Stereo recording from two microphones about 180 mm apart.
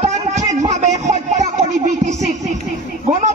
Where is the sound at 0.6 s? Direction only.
40° right (ahead or behind).